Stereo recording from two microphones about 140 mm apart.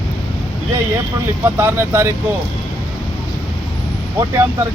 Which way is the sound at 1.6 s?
20° right (ahead or behind).